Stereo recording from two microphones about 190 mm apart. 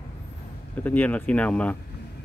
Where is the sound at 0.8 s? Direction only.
10° left (ahead or behind).